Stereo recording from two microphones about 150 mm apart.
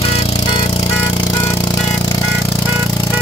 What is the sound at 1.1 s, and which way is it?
Music, 25° left (ahead or behind).